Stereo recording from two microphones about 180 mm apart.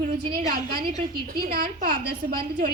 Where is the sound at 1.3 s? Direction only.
55° right (ahead or behind).